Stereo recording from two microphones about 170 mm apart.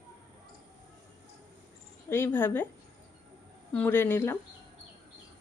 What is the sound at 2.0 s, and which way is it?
Speech, 15° left (ahead or behind).